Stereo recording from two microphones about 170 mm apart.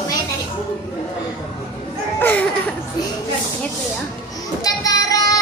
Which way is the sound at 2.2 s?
10° left (ahead or behind).